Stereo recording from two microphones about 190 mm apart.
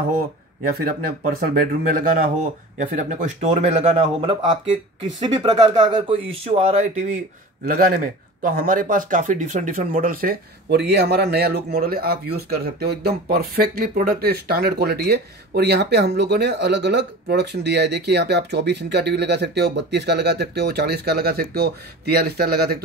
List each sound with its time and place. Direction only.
0.7 s speech: 50° right (ahead or behind); by 7.1 s 30° right (ahead or behind)
7.6 s speech: 50° right (ahead or behind)